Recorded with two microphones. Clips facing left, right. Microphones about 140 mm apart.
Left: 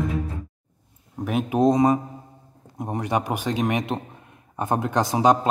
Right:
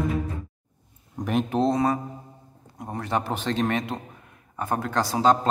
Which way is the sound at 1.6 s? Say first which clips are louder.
Left 6 dB; 15° left (ahead or behind).